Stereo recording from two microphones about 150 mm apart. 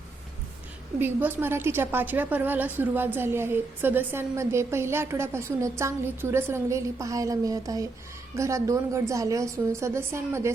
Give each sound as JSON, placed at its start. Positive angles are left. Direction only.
{"t": 0.9, "sound": "a woman's voice", "side_deg": -15}